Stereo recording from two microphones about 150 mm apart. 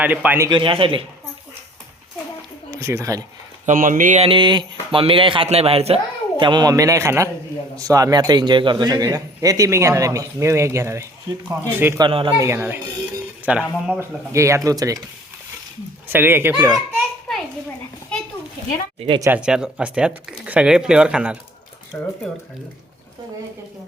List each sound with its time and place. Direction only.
0.0 s speech: 10° right (ahead or behind)
0.5 s speech: 35° right (ahead or behind)
2.6 s speech: 20° right (ahead or behind)
3.7 s speech: 60° right (ahead or behind)
4.2 s speech: 35° right (ahead or behind); by 11.9 s 15° right (ahead or behind)
11.9 s speech: 30° right (ahead or behind)
12.4 s a man's voice: 15° right (ahead or behind); by 14.0 s centre (ahead or behind)
14.0 s speech: 20° right (ahead or behind)
16.0 s speech: 15° right (ahead or behind)
18.9 s speech: 40° right (ahead or behind)
19.2 s speech: 10° right (ahead or behind)
21.9 s speech: 5° left (ahead or behind)